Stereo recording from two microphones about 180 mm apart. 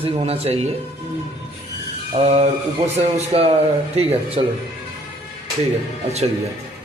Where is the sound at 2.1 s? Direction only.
35° right (ahead or behind).